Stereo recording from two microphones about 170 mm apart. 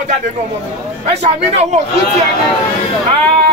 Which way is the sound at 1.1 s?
40° right (ahead or behind).